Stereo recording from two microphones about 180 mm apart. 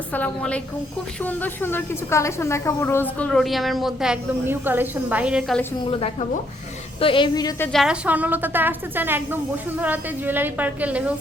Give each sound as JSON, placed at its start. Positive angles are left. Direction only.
{"t": 0.1, "sound": "a woman's voice", "side_deg": 10}
{"t": 5.9, "sound": "a woman's voice", "side_deg": 35}
{"t": 7.7, "sound": "speech", "side_deg": 0}